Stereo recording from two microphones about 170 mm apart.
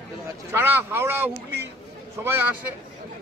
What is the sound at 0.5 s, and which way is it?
A man's voice, 15° right (ahead or behind).